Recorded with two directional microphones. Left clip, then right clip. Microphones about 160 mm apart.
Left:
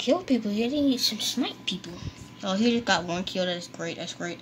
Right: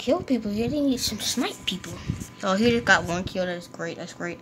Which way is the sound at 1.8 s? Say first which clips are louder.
Right 4 dB; centre (ahead or behind).